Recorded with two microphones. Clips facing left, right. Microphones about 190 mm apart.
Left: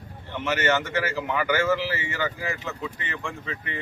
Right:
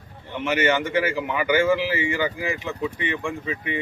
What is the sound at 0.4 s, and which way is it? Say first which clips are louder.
Speech: right 3 dB; 10° right (ahead or behind).